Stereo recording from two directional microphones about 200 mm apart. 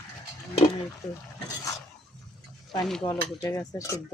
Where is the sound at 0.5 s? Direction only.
25° left (ahead or behind).